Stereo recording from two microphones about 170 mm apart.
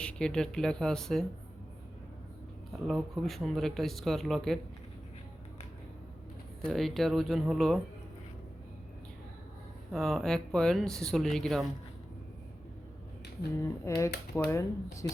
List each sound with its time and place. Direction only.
0.0 s speech: 5° left (ahead or behind)
2.8 s speech: centre (ahead or behind)
6.7 s speech: centre (ahead or behind)
9.9 s speech: centre (ahead or behind)
13.8 s speech: 15° left (ahead or behind)